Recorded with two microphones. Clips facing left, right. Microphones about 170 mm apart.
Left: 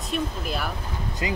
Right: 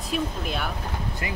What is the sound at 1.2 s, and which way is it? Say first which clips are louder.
Speech: left 7 dB; 20° left (ahead or behind).